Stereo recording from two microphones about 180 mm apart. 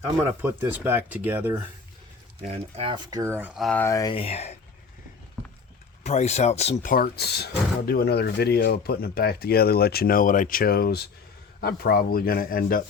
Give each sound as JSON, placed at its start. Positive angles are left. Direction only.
{"t": 0.4, "sound": "speech", "side_deg": -10}
{"t": 2.5, "sound": "speech", "side_deg": -30}
{"t": 3.7, "sound": "speech", "side_deg": 15}
{"t": 4.1, "sound": "speech", "side_deg": 30}
{"t": 6.0, "sound": "speech", "side_deg": 40}
{"t": 6.9, "sound": "speech", "side_deg": 60}